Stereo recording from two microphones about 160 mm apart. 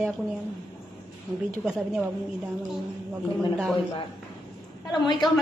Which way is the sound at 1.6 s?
5° right (ahead or behind).